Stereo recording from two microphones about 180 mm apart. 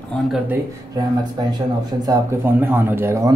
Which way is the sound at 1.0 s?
20° right (ahead or behind).